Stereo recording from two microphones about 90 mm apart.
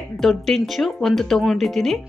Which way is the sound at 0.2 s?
5° left (ahead or behind).